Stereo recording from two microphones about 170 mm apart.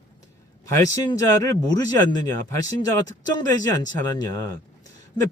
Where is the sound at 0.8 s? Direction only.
20° left (ahead or behind).